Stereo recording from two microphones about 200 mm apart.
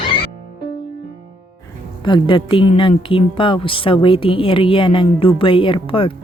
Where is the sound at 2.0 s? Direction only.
25° left (ahead or behind).